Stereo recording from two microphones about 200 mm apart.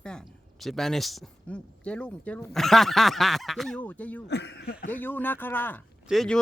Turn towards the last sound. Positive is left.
turn(degrees=0)  # may be behind; listen again after turning